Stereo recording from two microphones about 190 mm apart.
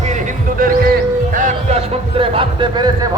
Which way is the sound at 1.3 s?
40° right (ahead or behind).